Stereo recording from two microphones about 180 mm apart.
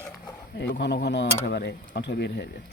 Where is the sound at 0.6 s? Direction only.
65° left (ahead or behind).